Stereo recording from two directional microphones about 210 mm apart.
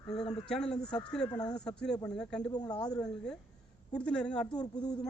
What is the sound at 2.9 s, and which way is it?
Speech, 5° left (ahead or behind).